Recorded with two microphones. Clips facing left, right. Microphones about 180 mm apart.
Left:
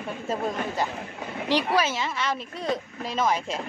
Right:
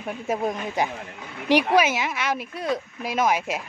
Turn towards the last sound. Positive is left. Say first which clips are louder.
# right 3 dB
turn(degrees=-10)  # may be behind; listen again after turning